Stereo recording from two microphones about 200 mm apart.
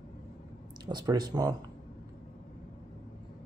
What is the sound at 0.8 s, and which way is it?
Speech, 20° right (ahead or behind).